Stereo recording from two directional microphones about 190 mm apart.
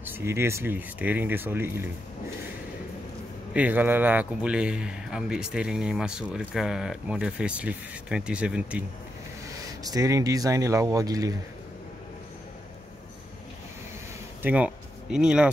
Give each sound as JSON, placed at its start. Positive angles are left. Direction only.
{"t": 0.0, "sound": "speech", "side_deg": -10}
{"t": 3.5, "sound": "a man's voice", "side_deg": -10}
{"t": 9.8, "sound": "speech", "side_deg": -20}
{"t": 14.4, "sound": "speech", "side_deg": -5}